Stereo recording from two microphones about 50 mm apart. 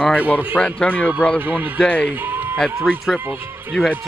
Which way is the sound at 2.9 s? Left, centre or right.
Centre.